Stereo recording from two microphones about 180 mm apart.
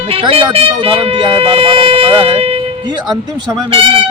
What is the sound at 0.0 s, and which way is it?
Speech, 30° right (ahead or behind).